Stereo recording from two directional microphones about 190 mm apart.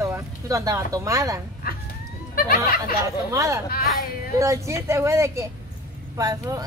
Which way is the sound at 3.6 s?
50° left (ahead or behind).